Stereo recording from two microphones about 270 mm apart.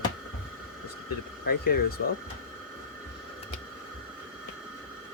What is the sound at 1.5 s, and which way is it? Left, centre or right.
Speech, left.